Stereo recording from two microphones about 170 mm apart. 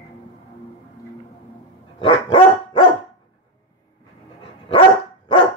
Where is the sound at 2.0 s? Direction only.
30° left (ahead or behind).